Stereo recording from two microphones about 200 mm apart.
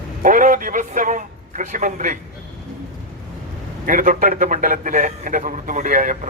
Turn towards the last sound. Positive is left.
turn(degrees=-40)  # may be behind; listen again after turning